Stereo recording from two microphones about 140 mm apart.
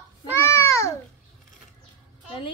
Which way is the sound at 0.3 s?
15° left (ahead or behind).